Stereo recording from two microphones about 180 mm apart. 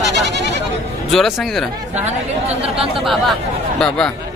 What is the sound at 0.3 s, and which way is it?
Goat, 70° right (ahead or behind).